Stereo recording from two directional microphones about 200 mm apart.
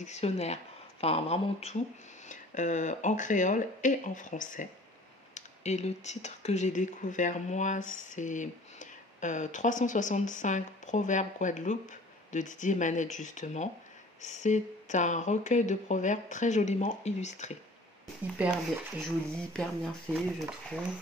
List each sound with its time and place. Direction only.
0.0 s speech: 35° left (ahead or behind)
19.5 s speech: 5° left (ahead or behind)